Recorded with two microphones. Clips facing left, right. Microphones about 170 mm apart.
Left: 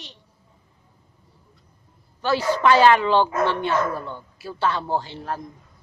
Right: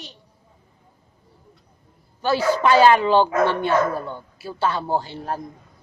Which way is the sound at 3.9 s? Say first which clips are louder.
Right 3 dB; 15° right (ahead or behind).